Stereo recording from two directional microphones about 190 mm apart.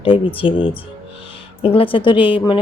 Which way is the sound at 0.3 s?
30° left (ahead or behind).